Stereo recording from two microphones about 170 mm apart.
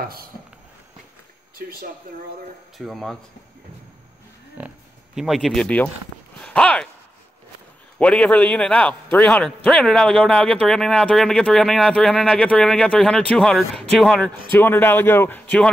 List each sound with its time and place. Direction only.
0.0 s speech: 60° right (ahead or behind)
1.6 s speech: 60° right (ahead or behind)
2.8 s a man's voice: centre (ahead or behind)
4.6 s speech: 5° right (ahead or behind)
8.0 s a man's voice: 5° left (ahead or behind)
14.5 s a man's voice: 10° left (ahead or behind)